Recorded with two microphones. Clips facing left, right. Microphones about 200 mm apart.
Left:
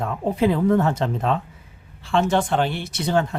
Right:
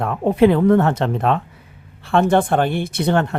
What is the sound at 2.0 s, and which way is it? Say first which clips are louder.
Speech: right 4 dB; 55° right (ahead or behind).